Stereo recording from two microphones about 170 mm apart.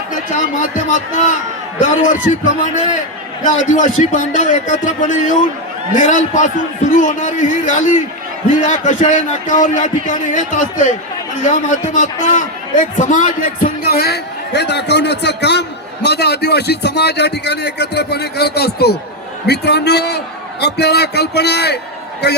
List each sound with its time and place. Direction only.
0.6 s a man's voice: 50° left (ahead or behind)
3.4 s a man's voice: 50° left (ahead or behind); by 22.4 s 75° left (ahead or behind)